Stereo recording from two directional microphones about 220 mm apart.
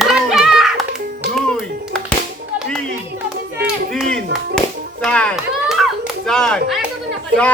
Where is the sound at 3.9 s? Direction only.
Centre (ahead or behind).